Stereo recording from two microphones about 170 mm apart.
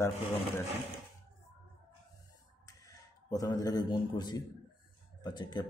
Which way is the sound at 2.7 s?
20° left (ahead or behind).